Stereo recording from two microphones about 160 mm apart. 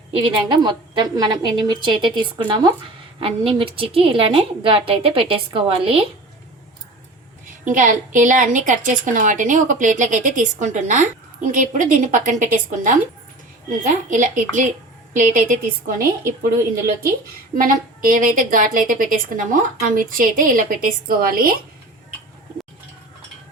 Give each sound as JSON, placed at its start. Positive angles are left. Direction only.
{"t": 0.2, "sound": "a woman's voice", "side_deg": -30}
{"t": 7.6, "sound": "a woman's voice", "side_deg": -55}
{"t": 14.1, "sound": "a woman's voice", "side_deg": -55}